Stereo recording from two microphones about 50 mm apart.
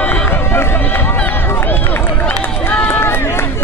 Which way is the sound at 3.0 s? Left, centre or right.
Left.